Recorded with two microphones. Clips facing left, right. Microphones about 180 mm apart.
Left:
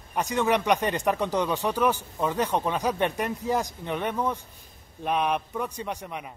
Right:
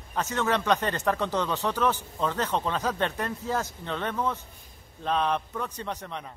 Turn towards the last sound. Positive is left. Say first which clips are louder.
# left 1 dB
turn(degrees=10)  # may be behind; listen again after turning